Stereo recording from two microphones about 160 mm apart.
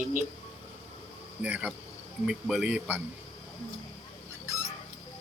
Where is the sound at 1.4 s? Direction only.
10° right (ahead or behind).